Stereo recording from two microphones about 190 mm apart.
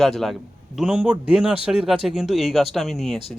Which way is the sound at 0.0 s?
Centre (ahead or behind).